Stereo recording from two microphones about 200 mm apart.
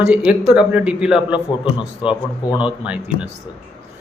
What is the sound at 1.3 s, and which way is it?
Speech, 25° left (ahead or behind).